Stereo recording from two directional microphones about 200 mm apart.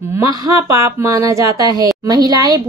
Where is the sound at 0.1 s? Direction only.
15° right (ahead or behind).